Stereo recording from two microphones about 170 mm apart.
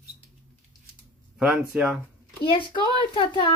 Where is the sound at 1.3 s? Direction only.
5° right (ahead or behind).